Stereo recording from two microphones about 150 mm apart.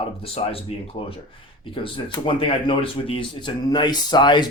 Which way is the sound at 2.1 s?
35° left (ahead or behind).